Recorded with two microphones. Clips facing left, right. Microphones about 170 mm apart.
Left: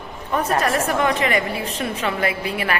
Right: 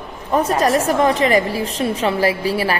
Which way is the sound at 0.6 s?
35° right (ahead or behind).